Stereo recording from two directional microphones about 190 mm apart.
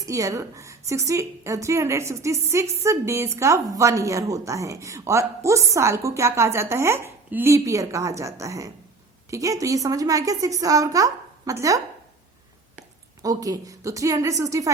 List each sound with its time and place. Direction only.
0.0 s a woman's voice: 15° right (ahead or behind)
13.2 s a woman's voice: 20° right (ahead or behind)